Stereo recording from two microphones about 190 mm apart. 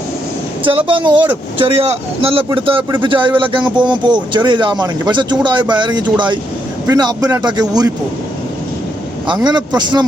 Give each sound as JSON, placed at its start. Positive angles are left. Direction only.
{"t": 0.9, "sound": "speech", "side_deg": -25}
{"t": 9.2, "sound": "speech", "side_deg": -25}